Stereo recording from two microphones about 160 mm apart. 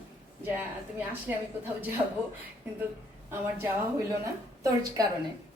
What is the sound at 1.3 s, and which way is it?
Speech, 15° right (ahead or behind).